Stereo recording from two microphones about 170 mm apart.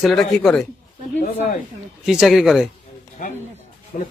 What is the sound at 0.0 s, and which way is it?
Speech, centre (ahead or behind).